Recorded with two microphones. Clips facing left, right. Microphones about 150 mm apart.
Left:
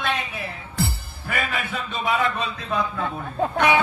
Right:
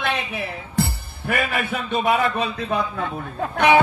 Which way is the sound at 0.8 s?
55° right (ahead or behind).